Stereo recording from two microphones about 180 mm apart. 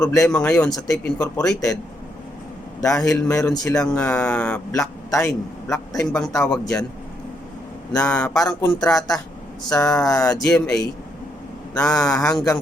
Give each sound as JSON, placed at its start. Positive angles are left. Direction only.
{"t": 0.2, "sound": "a man's voice", "side_deg": 5}
{"t": 3.1, "sound": "a man's voice", "side_deg": 10}
{"t": 4.7, "sound": "a man's voice", "side_deg": 15}
{"t": 6.1, "sound": "speech", "side_deg": 5}
{"t": 7.9, "sound": "speech", "side_deg": 5}
{"t": 8.9, "sound": "a sound", "side_deg": 20}
{"t": 10.4, "sound": "speech", "side_deg": 5}